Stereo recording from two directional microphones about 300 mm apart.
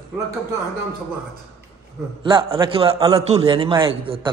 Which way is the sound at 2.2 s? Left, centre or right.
Centre.